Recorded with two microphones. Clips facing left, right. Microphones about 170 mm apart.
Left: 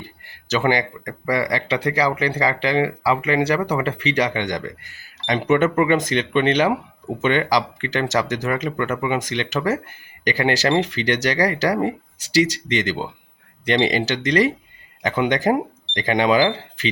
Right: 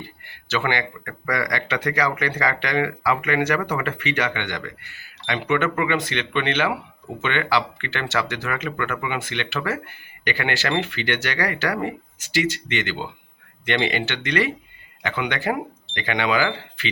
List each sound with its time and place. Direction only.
0.0 s speech: 40° left (ahead or behind)